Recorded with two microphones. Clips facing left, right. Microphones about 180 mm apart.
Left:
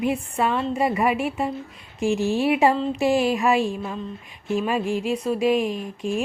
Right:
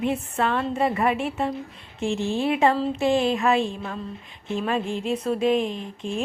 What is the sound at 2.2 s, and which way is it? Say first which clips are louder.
Music: left 2 dB; 20° right (ahead or behind).